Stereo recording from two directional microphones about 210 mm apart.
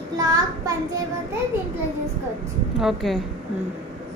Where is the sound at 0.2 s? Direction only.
15° right (ahead or behind).